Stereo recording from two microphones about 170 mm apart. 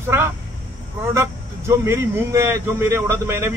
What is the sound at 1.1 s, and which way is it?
Speech, 15° right (ahead or behind).